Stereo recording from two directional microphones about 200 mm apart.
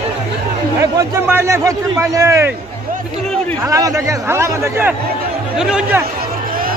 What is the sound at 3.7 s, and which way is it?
A man's voice, 15° right (ahead or behind).